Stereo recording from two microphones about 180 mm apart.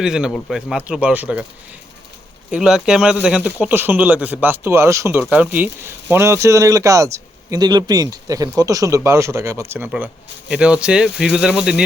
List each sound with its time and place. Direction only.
0.0 s speech: 5° right (ahead or behind)
2.5 s speech: 5° right (ahead or behind)